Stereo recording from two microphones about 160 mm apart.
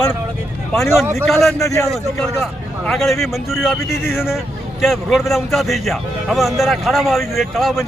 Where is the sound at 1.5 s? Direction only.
20° left (ahead or behind).